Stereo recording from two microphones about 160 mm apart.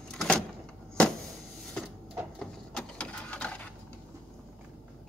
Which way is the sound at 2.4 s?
5° left (ahead or behind).